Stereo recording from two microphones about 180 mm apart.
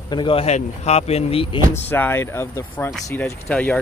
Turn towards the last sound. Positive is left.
turn(degrees=10)  # may be behind; listen again after turning